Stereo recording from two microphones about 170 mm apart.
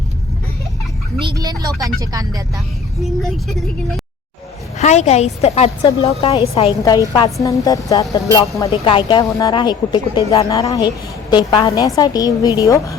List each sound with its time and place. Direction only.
1.4 s speech: 20° right (ahead or behind)
3.2 s speech: centre (ahead or behind)
4.8 s a woman's voice: 40° left (ahead or behind)
6.8 s speech: 20° left (ahead or behind)